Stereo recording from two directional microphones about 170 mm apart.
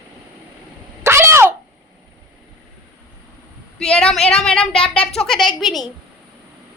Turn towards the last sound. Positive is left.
turn(degrees=0)  # may be behind; listen again after turning